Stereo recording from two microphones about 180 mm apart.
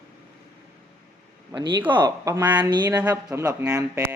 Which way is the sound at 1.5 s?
20° right (ahead or behind).